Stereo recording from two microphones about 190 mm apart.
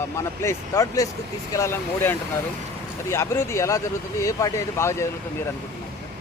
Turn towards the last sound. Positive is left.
turn(degrees=15)  # may be behind; listen again after turning